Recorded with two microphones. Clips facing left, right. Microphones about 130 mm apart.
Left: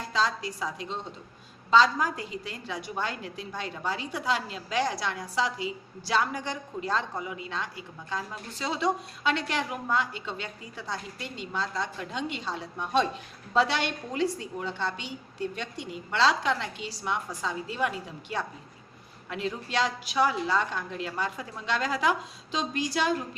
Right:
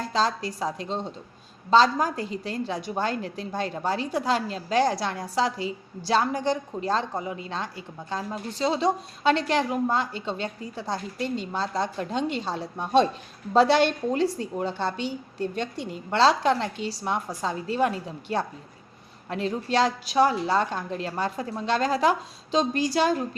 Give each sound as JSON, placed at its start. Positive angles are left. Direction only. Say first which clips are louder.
{"t": 0.1, "sound": "a woman's voice", "louder": "right 2 dB", "side_deg": -35}